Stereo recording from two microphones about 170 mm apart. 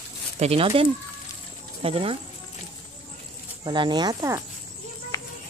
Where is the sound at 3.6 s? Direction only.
25° right (ahead or behind).